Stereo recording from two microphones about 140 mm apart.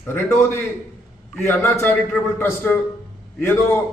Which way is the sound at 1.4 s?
15° left (ahead or behind).